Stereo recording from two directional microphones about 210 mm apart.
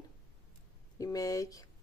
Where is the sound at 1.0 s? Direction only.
15° left (ahead or behind).